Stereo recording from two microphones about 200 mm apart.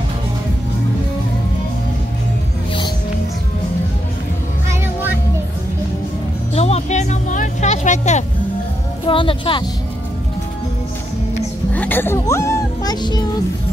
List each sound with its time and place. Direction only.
6.5 s music: 30° left (ahead or behind)
9.0 s speech: 25° left (ahead or behind)
11.7 s speech: 10° left (ahead or behind)